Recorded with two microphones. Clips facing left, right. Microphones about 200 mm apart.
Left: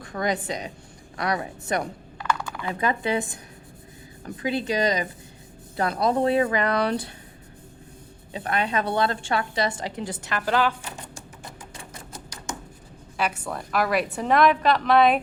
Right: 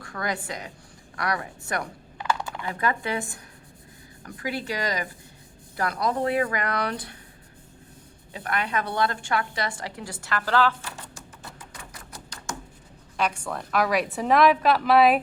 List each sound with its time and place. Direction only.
0.0 s speech: 20° left (ahead or behind)
2.1 s typing: 25° right (ahead or behind)
2.6 s speech: 20° left (ahead or behind)
8.3 s a woman's voice: 25° left (ahead or behind)
11.7 s a sound: 25° left (ahead or behind)
13.1 s a woman's voice: 5° left (ahead or behind)